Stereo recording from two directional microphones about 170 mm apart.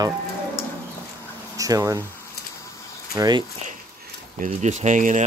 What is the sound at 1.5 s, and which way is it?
Speech, 20° right (ahead or behind).